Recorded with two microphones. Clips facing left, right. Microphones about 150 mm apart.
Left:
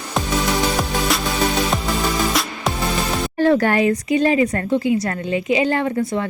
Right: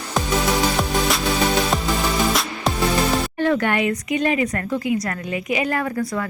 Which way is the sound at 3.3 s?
35° left (ahead or behind).